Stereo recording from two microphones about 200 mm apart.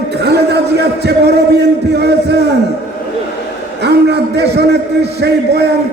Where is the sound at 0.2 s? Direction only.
55° right (ahead or behind).